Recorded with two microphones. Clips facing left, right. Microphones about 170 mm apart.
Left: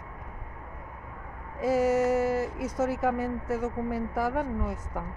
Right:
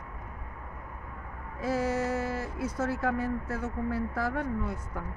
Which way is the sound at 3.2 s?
45° left (ahead or behind).